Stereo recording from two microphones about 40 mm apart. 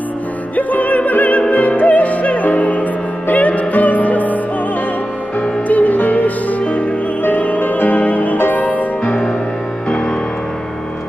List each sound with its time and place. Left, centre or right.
0.6 s music: left
5.4 s music: left